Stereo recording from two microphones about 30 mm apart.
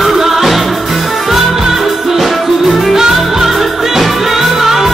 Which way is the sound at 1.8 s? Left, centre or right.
Centre.